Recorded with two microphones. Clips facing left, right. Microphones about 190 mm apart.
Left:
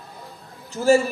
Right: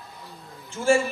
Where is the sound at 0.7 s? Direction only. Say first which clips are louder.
Left 4 dB; 40° left (ahead or behind).